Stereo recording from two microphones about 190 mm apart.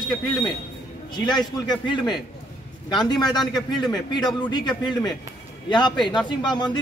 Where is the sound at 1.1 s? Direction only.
20° left (ahead or behind).